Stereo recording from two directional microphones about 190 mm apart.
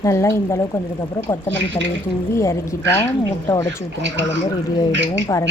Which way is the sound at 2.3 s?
15° left (ahead or behind).